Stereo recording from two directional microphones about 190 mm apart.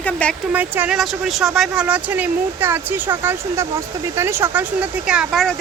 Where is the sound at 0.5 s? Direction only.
10° right (ahead or behind).